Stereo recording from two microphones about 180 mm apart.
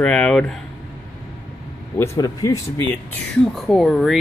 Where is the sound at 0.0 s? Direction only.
5° left (ahead or behind).